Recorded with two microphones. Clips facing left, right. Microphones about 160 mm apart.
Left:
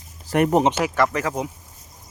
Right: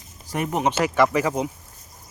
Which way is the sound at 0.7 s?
5° left (ahead or behind).